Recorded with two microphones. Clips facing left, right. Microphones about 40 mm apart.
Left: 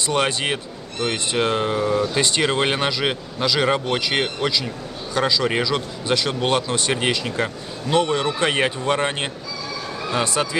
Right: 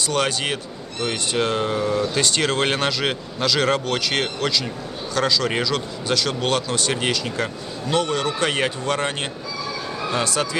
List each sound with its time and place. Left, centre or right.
0.0 s speech: left